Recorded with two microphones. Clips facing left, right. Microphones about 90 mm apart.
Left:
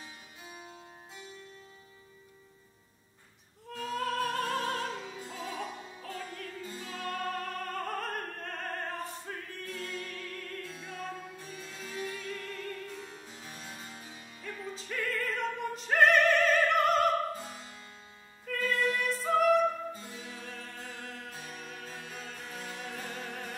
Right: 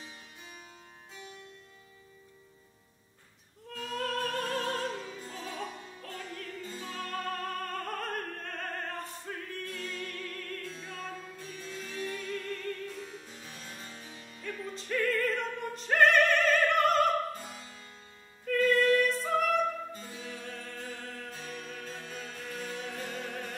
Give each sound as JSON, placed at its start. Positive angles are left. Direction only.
{"t": 0.0, "sound": "harpsichord", "side_deg": 5}
{"t": 3.7, "sound": "opera", "side_deg": 5}
{"t": 11.1, "sound": "music", "side_deg": 10}
{"t": 18.4, "sound": "music", "side_deg": 5}